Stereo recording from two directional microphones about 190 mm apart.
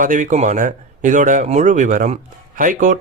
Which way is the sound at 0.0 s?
45° right (ahead or behind).